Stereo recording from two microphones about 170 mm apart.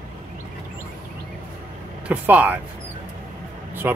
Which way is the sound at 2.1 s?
10° right (ahead or behind).